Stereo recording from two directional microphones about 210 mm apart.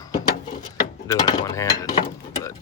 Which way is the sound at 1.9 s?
25° left (ahead or behind).